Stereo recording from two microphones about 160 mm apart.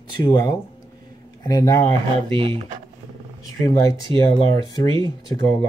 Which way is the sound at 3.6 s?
20° left (ahead or behind).